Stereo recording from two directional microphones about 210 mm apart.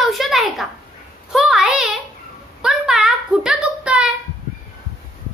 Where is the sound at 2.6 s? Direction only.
5° right (ahead or behind).